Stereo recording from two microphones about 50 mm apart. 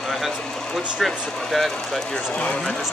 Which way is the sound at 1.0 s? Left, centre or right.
Centre.